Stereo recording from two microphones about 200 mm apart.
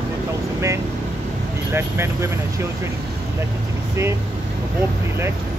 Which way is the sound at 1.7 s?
10° right (ahead or behind).